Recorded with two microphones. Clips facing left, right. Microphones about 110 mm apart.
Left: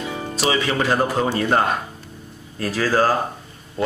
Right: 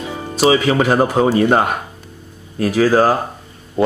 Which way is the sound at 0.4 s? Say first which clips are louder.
Right 8 dB; 30° right (ahead or behind).